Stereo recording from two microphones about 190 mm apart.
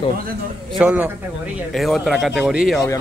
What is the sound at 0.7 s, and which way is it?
A man's voice, 5° right (ahead or behind).